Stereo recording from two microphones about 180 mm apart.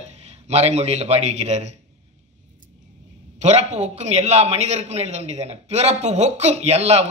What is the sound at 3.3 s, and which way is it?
A man's voice, 40° right (ahead or behind).